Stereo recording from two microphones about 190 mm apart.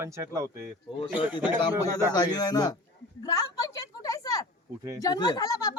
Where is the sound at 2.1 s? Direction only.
20° left (ahead or behind).